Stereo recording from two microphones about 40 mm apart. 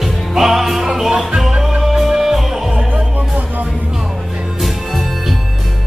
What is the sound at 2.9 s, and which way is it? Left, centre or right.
Music, right.